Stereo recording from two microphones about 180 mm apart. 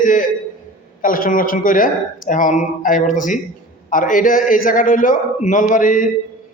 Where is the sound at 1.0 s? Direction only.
50° left (ahead or behind).